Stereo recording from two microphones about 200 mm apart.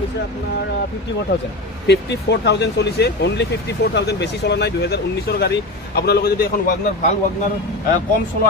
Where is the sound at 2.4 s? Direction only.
60° left (ahead or behind).